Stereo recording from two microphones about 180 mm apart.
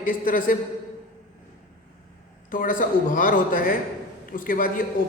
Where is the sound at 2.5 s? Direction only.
45° left (ahead or behind).